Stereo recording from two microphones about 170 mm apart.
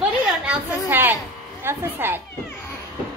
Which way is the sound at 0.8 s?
10° right (ahead or behind).